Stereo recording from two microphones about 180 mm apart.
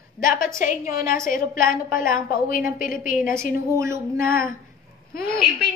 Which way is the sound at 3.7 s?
15° right (ahead or behind).